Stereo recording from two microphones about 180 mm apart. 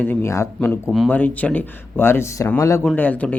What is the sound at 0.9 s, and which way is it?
Speech, centre (ahead or behind).